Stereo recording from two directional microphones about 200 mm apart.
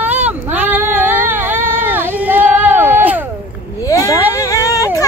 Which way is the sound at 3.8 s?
15° left (ahead or behind).